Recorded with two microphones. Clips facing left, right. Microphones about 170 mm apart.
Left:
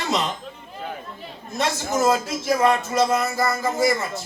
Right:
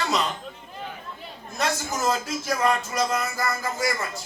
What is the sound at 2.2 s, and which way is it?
Music, 25° left (ahead or behind).